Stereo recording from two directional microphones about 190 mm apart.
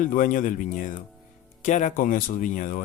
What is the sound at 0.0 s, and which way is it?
Speech, 45° left (ahead or behind).